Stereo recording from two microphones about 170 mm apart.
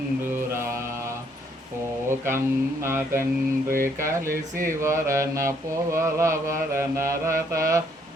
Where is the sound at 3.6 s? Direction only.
55° right (ahead or behind).